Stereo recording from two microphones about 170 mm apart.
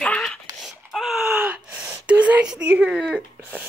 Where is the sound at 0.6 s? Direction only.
Centre (ahead or behind).